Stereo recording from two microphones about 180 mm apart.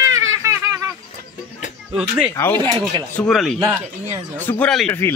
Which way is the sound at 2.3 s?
10° left (ahead or behind).